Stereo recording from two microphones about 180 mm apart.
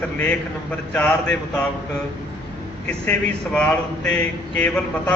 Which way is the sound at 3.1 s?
5° left (ahead or behind).